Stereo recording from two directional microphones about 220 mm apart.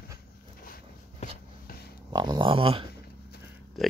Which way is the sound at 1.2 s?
40° left (ahead or behind).